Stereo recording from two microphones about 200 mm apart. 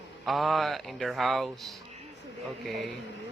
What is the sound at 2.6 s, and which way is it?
Speech, centre (ahead or behind).